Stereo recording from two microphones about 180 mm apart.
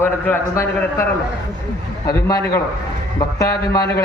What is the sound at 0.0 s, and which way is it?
A man's voice, 15° left (ahead or behind).